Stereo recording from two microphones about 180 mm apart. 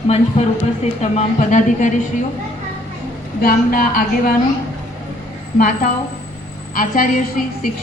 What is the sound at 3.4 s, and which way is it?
Speech, 55° left (ahead or behind).